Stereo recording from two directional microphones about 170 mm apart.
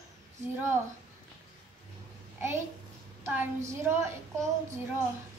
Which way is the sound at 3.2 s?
15° right (ahead or behind).